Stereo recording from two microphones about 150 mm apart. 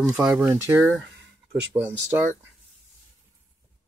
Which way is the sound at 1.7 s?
30° right (ahead or behind).